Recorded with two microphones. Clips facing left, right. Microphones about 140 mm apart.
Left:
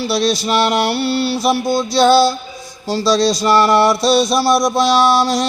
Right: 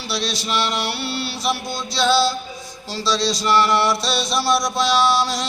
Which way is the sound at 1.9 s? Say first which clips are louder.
Left 6 dB; 50° left (ahead or behind).